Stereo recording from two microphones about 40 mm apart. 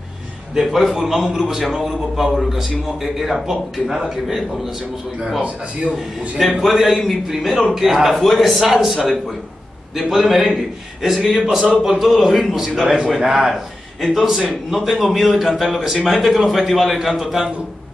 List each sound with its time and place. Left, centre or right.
0.6 s a man's voice: centre
6.4 s a man's voice: centre